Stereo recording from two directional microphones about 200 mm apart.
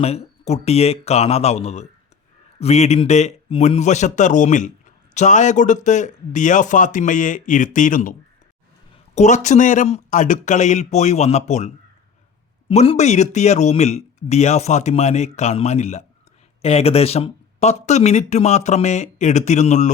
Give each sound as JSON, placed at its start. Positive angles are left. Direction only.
{"t": 0.0, "sound": "a man's voice", "side_deg": 30}
{"t": 9.1, "sound": "a man's voice", "side_deg": 35}